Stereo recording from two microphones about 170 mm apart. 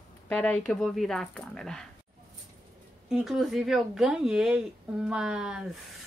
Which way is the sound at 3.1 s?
Centre (ahead or behind).